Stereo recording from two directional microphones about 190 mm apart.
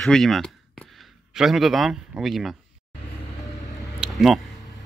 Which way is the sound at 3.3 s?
15° left (ahead or behind).